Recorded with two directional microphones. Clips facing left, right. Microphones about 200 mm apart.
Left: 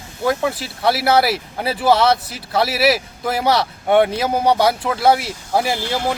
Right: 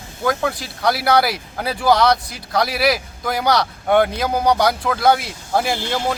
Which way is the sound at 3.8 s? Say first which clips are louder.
Left 2 dB; 5° left (ahead or behind).